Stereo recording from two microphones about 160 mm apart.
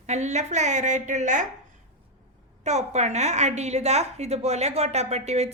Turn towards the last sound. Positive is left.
turn(degrees=-40)  # may be behind; listen again after turning